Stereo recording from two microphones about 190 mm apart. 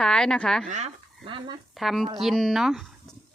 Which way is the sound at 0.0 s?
5° left (ahead or behind).